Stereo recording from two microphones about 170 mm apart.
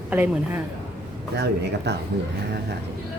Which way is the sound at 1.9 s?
90° right.